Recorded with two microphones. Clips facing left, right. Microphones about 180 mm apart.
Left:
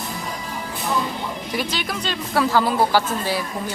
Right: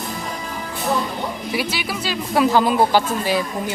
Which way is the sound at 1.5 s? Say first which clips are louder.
Even; 10° right (ahead or behind).